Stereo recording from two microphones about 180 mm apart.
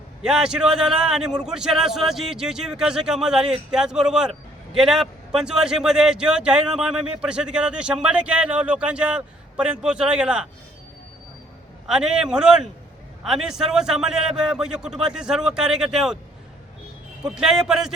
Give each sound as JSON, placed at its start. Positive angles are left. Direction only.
{"t": 0.2, "sound": "speech", "side_deg": -5}
{"t": 11.9, "sound": "speech", "side_deg": -5}
{"t": 17.2, "sound": "speech", "side_deg": -5}